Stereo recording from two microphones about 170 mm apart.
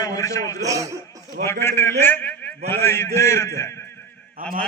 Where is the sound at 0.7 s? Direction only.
20° right (ahead or behind).